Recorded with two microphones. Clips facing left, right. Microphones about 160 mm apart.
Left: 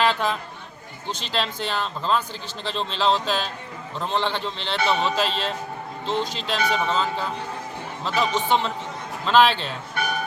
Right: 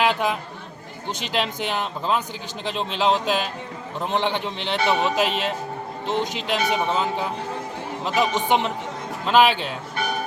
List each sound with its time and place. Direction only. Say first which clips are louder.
0.0 s a man's voice: right 1 dB; 10° right (ahead or behind)